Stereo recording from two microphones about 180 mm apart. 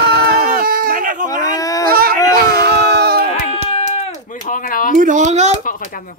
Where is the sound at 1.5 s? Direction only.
20° left (ahead or behind).